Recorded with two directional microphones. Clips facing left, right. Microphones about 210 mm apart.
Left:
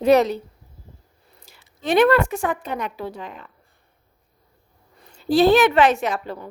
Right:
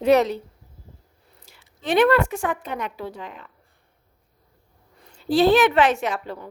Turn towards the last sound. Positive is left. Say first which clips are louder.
# left 2 dB
turn(degrees=40)  # may be behind; listen again after turning